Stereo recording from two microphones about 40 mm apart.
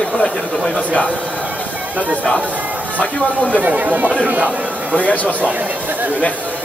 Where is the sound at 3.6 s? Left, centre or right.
Right.